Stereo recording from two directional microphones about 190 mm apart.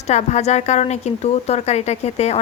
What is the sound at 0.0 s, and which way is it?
A woman's voice, 35° left (ahead or behind).